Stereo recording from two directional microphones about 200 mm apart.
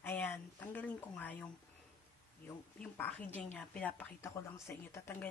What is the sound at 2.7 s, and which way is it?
A woman's voice, 10° left (ahead or behind).